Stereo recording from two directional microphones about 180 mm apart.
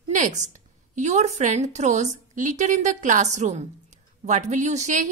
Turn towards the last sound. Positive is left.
turn(degrees=-40)  # may be behind; listen again after turning